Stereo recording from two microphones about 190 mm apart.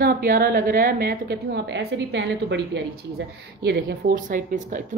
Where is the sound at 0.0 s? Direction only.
50° right (ahead or behind); by 2.8 s 70° right (ahead or behind).